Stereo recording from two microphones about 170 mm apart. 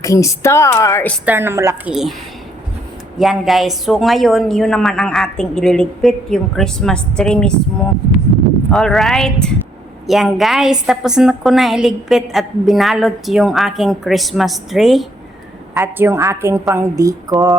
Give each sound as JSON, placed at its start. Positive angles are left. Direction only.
{"t": 0.0, "sound": "a woman's voice", "side_deg": 20}
{"t": 1.2, "sound": "a woman's voice", "side_deg": -10}
{"t": 1.9, "sound": "a woman's voice", "side_deg": 0}
{"t": 3.2, "sound": "a woman's voice", "side_deg": 0}
{"t": 8.7, "sound": "a woman's voice", "side_deg": 0}
{"t": 15.7, "sound": "a woman's voice", "side_deg": -10}